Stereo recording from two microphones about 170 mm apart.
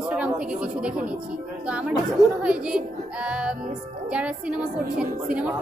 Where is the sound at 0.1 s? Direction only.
5° right (ahead or behind).